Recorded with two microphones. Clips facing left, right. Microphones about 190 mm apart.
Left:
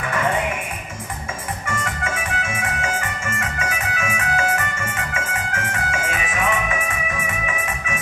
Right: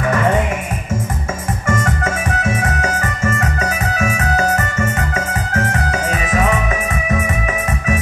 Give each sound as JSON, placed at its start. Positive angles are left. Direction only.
{"t": 1.7, "sound": "music", "side_deg": -45}